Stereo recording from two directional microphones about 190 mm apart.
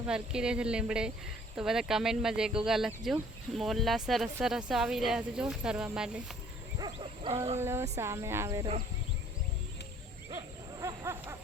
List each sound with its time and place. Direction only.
0.1 s speech: 5° right (ahead or behind)
6.7 s livestock: 25° right (ahead or behind)
7.6 s speech: 15° right (ahead or behind)
10.8 s a sound: 15° right (ahead or behind)